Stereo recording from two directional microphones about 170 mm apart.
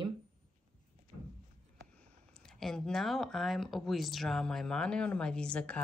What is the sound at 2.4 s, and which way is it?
Speech, centre (ahead or behind).